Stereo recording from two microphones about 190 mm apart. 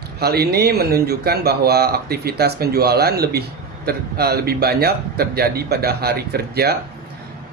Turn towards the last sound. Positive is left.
turn(degrees=-55)  # may be behind; listen again after turning